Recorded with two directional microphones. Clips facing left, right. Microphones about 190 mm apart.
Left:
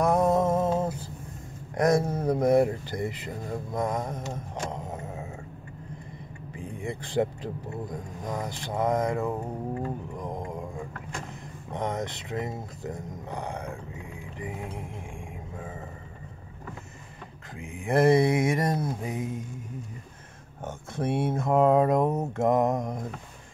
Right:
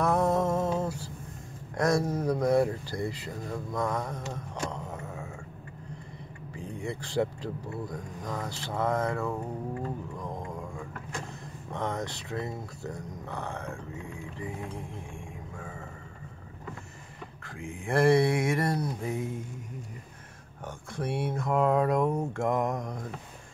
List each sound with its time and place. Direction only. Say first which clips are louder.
0.0 s a sound: left 3 dB; 20° left (ahead or behind)
1.8 s speech: left 3 dB; 20° left (ahead or behind)
6.5 s speech: left 1 dB; 20° left (ahead or behind)
10.1 s a sound: left 3 dB; 20° left (ahead or behind)
11.7 s speech: left 2 dB; 20° left (ahead or behind)
17.6 s speech: left 3 dB; 20° left (ahead or behind)
20.6 s speech: left 4 dB; 25° left (ahead or behind)